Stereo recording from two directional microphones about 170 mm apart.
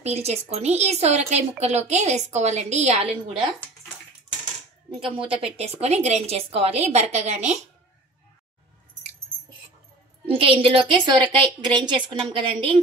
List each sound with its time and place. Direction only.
0.0 s a woman's voice: 40° right (ahead or behind)
5.1 s a woman's voice: 30° right (ahead or behind)
10.2 s a woman's voice: 35° right (ahead or behind)